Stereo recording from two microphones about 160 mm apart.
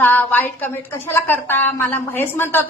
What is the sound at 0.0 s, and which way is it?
A woman's voice, 10° left (ahead or behind).